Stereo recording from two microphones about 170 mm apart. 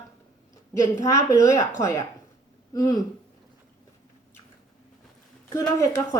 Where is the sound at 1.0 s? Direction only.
20° left (ahead or behind).